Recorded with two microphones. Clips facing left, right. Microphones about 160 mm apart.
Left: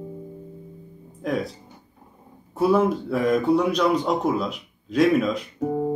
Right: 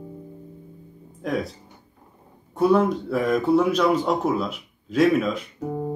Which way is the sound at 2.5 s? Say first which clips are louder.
Right 1 dB; 5° left (ahead or behind).